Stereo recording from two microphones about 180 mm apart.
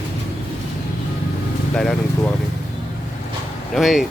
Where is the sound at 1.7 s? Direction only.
5° left (ahead or behind).